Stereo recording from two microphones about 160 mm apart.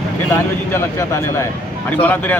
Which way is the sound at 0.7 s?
15° left (ahead or behind).